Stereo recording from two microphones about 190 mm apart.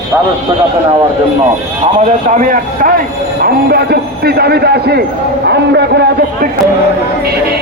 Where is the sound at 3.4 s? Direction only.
55° right (ahead or behind).